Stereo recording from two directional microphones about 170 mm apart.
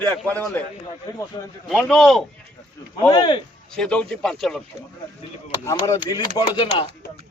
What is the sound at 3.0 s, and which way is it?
Speech, 25° left (ahead or behind).